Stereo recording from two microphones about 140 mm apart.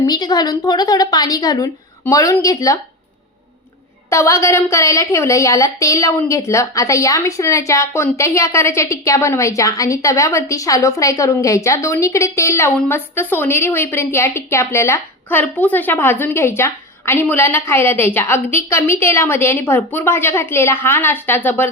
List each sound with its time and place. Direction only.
0.0 s a woman's voice: 30° left (ahead or behind)
4.1 s a woman's voice: 20° left (ahead or behind)